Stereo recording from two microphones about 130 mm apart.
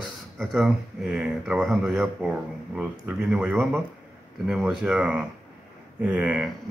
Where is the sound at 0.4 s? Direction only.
Centre (ahead or behind).